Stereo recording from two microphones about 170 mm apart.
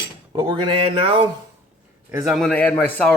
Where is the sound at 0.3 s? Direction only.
30° right (ahead or behind).